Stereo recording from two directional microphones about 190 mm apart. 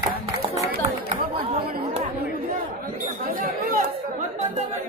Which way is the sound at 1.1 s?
40° right (ahead or behind).